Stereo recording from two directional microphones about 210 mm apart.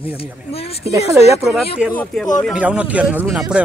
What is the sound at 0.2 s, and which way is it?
Speech, 30° left (ahead or behind).